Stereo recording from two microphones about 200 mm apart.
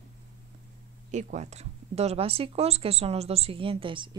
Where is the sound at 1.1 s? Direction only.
35° right (ahead or behind).